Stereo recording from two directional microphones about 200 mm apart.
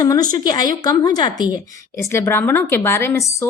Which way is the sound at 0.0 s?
20° left (ahead or behind).